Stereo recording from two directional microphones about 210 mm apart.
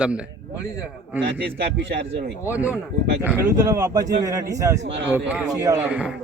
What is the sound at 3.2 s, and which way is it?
Speech, 10° right (ahead or behind).